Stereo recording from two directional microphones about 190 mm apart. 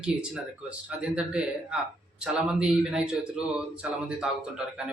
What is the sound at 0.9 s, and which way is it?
A man's voice, 5° right (ahead or behind).